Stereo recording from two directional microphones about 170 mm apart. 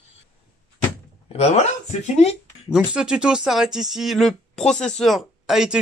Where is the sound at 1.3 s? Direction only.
40° left (ahead or behind).